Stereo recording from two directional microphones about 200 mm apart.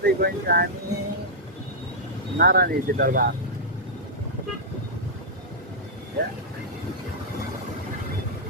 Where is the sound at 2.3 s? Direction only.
50° right (ahead or behind).